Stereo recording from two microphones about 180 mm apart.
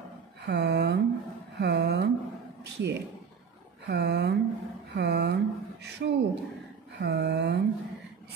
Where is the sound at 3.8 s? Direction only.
70° right (ahead or behind).